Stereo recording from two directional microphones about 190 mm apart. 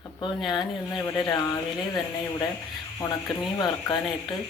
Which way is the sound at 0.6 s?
20° left (ahead or behind).